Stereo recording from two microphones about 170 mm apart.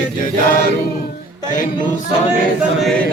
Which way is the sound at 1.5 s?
50° left (ahead or behind).